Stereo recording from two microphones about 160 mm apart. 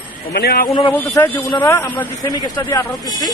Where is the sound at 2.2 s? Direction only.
25° left (ahead or behind).